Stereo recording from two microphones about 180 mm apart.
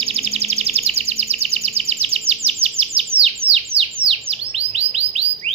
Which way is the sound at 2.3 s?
35° right (ahead or behind).